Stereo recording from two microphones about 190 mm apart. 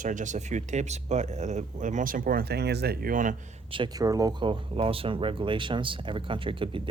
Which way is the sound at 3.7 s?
20° right (ahead or behind).